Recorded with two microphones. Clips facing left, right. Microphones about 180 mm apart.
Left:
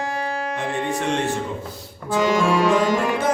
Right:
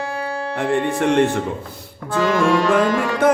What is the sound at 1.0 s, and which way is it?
Music, 55° right (ahead or behind).